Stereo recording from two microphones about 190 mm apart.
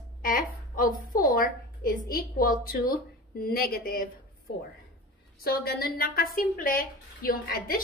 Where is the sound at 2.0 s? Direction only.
50° left (ahead or behind).